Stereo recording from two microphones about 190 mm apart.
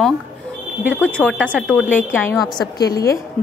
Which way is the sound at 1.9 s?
10° left (ahead or behind).